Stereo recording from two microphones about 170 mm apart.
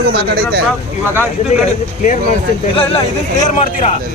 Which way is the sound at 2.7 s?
35° left (ahead or behind).